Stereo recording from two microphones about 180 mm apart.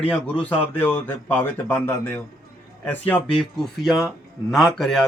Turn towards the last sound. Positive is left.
turn(degrees=0)  # may be behind; listen again after turning